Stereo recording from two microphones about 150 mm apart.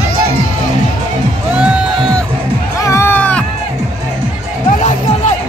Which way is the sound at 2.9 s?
15° left (ahead or behind).